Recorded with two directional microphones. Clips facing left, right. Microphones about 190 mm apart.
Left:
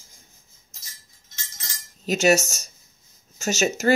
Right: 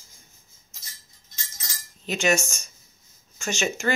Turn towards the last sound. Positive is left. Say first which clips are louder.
# left 4 dB
turn(degrees=40)  # may be behind; listen again after turning